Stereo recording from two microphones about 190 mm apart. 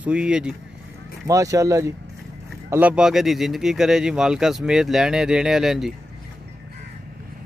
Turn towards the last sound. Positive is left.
turn(degrees=0)  # may be behind; listen again after turning